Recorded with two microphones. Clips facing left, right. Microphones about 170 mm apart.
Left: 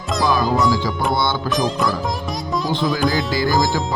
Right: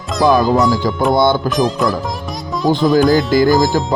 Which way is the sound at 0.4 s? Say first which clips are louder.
Right 5 dB; centre (ahead or behind).